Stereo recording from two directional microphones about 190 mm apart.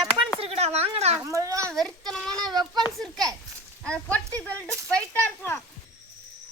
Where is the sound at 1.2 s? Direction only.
15° right (ahead or behind).